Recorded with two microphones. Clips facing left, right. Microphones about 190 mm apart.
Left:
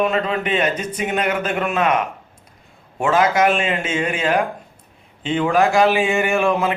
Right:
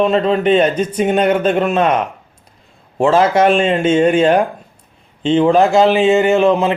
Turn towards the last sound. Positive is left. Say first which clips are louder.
# right 6 dB
turn(degrees=-25)  # may be behind; listen again after turning